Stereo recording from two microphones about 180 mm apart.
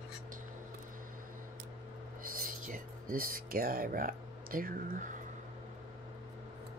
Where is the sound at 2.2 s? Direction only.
50° right (ahead or behind).